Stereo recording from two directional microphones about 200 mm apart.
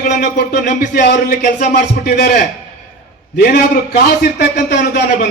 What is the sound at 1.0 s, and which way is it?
A man's voice, 55° left (ahead or behind).